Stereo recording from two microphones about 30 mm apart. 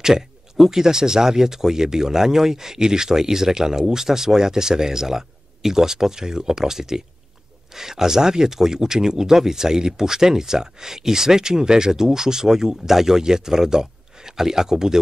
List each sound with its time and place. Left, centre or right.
0.7 s speech: centre